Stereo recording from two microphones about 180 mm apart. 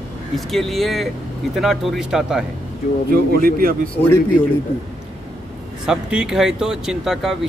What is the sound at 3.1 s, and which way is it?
Speech, 55° right (ahead or behind).